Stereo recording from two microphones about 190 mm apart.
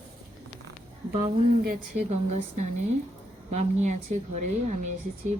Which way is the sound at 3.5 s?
40° right (ahead or behind).